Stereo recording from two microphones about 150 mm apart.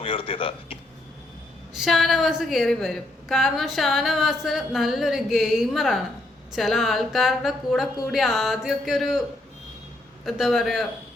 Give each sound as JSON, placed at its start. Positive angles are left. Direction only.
{"t": 0.0, "sound": "a man's voice", "side_deg": 35}
{"t": 1.7, "sound": "a woman's voice", "side_deg": 0}
{"t": 10.2, "sound": "a woman's voice", "side_deg": 0}